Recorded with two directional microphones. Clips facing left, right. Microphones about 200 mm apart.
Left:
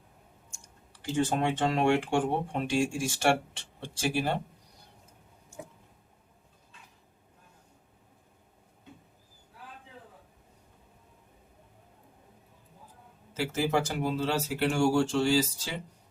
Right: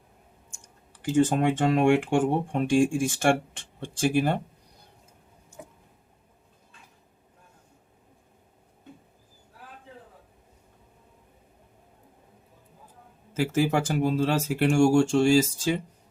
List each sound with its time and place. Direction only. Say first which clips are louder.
1.0 s speech: right 6 dB; 50° right (ahead or behind)
13.3 s speech: right 4 dB; 50° right (ahead or behind)